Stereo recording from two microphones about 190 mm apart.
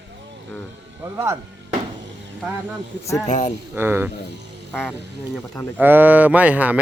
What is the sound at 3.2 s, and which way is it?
Speech, 40° left (ahead or behind).